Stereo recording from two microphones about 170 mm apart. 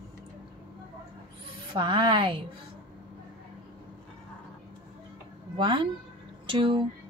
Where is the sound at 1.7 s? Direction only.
30° right (ahead or behind).